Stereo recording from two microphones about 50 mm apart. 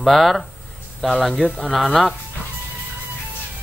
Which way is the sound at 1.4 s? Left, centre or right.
Left.